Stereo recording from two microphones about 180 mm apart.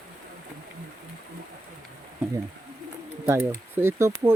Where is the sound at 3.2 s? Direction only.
15° right (ahead or behind).